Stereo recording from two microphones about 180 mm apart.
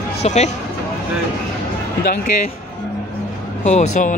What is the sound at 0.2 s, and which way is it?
Speech, 40° left (ahead or behind).